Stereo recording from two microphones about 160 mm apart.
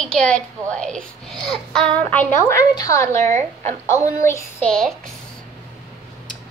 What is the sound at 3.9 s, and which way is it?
Speech, 15° left (ahead or behind).